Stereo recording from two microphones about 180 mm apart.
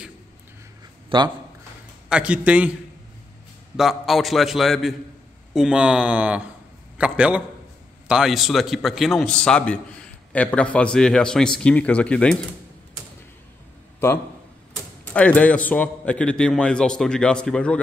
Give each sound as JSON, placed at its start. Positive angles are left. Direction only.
{"t": 1.1, "sound": "speech", "side_deg": -30}
{"t": 2.0, "sound": "a man's voice", "side_deg": -5}
{"t": 3.7, "sound": "a man's voice", "side_deg": 0}
{"t": 15.1, "sound": "a man's voice", "side_deg": 5}